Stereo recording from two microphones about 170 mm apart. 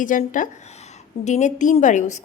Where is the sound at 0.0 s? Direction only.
50° left (ahead or behind).